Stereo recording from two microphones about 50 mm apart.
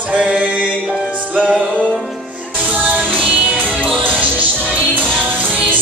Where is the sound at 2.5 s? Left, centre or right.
Right.